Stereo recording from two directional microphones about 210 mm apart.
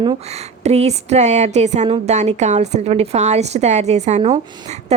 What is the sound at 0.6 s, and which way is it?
A woman's voice, 30° right (ahead or behind).